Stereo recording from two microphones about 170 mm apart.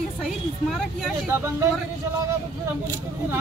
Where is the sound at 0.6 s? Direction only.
Centre (ahead or behind).